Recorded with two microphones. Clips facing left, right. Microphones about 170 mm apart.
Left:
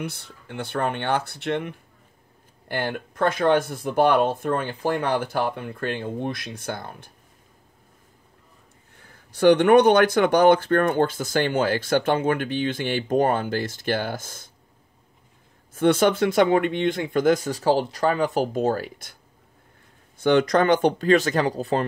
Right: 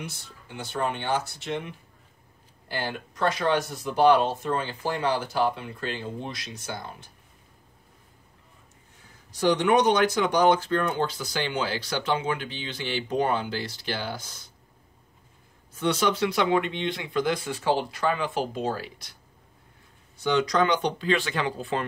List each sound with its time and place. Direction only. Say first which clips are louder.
0.0 s speech: left 7 dB; 60° left (ahead or behind)
8.9 s speech: left 4 dB; 60° left (ahead or behind)
15.7 s speech: left 6 dB; 50° left (ahead or behind)
20.2 s speech: left 5 dB; 55° left (ahead or behind); by 21.8 s 35° left (ahead or behind)